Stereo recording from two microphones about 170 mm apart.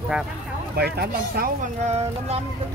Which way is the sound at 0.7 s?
70° right (ahead or behind).